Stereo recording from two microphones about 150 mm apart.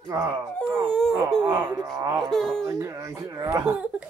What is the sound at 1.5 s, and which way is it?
Speech, 15° right (ahead or behind).